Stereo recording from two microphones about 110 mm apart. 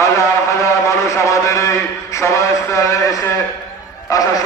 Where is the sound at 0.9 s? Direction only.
25° left (ahead or behind).